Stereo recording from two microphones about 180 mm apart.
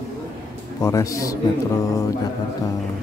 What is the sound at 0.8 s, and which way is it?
Speech, 15° left (ahead or behind).